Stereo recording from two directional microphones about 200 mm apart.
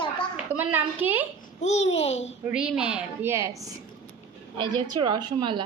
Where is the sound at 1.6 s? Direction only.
35° left (ahead or behind).